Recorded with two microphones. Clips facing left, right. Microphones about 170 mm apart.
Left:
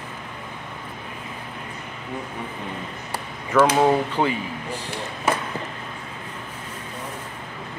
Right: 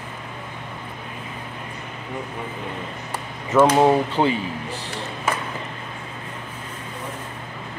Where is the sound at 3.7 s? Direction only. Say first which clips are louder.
Right 2 dB; 20° right (ahead or behind).